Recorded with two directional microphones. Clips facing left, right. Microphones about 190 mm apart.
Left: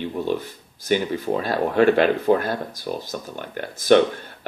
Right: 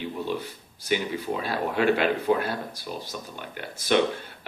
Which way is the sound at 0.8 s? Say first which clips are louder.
Left 5 dB; 45° left (ahead or behind).